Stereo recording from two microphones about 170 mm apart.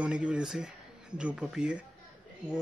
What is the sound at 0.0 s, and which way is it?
Speech, 5° right (ahead or behind).